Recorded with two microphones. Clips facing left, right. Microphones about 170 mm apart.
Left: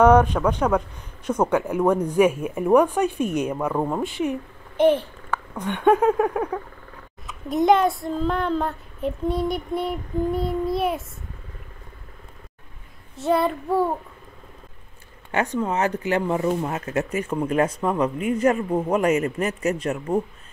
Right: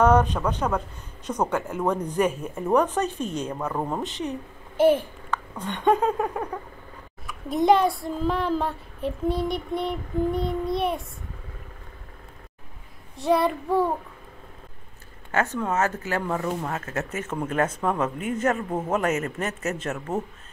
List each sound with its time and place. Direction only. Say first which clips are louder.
0.0 s speech: left 4 dB; 10° left (ahead or behind)
4.1 s speech: left 5 dB; 15° left (ahead or behind)
4.7 s a child's voice: left 1 dB; 10° right (ahead or behind)
5.3 s speech: left 3 dB; 10° left (ahead or behind)
7.4 s child singing: left 1 dB; centre (ahead or behind)
13.1 s child singing: left 1 dB; centre (ahead or behind)
15.3 s speech: left 1 dB; 15° left (ahead or behind)